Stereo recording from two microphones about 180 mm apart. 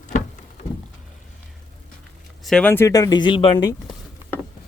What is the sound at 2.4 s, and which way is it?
Speech, 5° left (ahead or behind).